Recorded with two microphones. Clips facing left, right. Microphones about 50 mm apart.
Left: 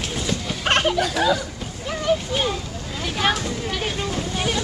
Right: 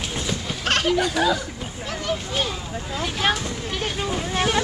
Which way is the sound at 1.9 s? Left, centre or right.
Centre.